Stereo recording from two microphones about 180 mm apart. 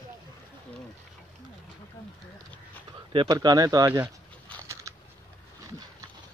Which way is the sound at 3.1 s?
25° right (ahead or behind).